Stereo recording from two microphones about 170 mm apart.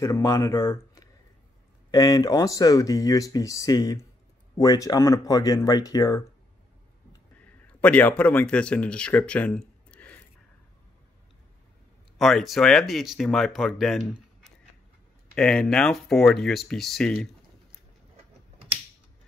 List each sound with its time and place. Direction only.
0.0 s speech: 20° left (ahead or behind)
7.6 s speech: 5° left (ahead or behind)
12.2 s speech: centre (ahead or behind)
15.3 s speech: 5° left (ahead or behind)